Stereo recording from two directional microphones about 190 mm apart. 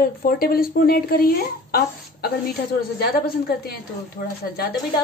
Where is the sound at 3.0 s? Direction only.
55° left (ahead or behind).